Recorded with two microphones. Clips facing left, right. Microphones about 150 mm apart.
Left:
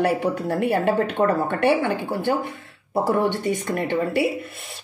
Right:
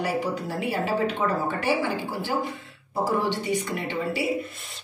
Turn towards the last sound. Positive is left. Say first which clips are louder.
# left 6 dB
turn(degrees=55)  # may be behind; listen again after turning